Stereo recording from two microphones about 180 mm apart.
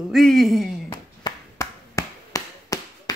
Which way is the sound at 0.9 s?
20° left (ahead or behind).